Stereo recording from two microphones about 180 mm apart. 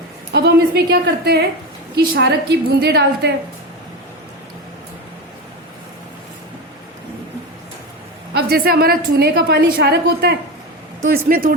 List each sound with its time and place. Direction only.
0.3 s a woman's voice: 65° right (ahead or behind)
8.3 s a woman's voice: 60° right (ahead or behind)
11.1 s speech: 50° right (ahead or behind)